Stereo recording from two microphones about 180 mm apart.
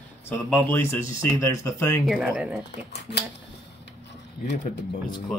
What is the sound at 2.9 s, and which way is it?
Speech, 70° left (ahead or behind).